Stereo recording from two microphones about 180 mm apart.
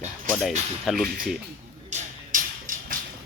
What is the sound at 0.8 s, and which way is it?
Speech, centre (ahead or behind).